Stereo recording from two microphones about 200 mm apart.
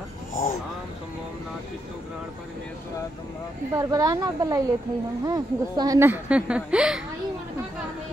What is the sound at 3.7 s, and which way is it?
Speech, 15° right (ahead or behind).